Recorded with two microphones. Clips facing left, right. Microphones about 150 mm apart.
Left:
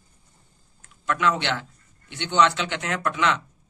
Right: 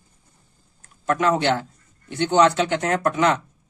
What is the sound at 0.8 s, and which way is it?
Speech, 40° right (ahead or behind).